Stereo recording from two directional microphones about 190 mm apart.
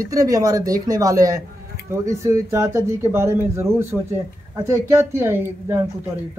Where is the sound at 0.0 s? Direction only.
15° right (ahead or behind).